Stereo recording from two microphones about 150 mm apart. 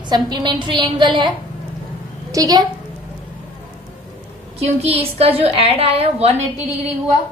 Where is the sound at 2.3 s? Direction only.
25° right (ahead or behind).